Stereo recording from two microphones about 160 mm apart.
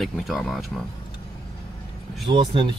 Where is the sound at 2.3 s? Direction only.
30° right (ahead or behind).